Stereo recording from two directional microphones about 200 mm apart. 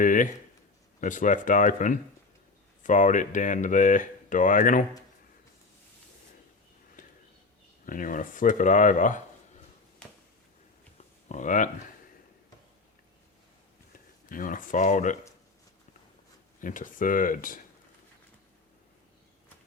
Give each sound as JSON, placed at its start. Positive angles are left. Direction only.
{"t": 0.0, "sound": "speech", "side_deg": 40}
{"t": 7.0, "sound": "a sound", "side_deg": 45}
{"t": 7.9, "sound": "speech", "side_deg": 40}
{"t": 11.3, "sound": "speech", "side_deg": 40}
{"t": 14.3, "sound": "speech", "side_deg": 40}
{"t": 16.6, "sound": "speech", "side_deg": 40}